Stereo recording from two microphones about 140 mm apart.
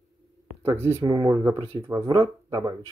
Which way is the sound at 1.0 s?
35° right (ahead or behind).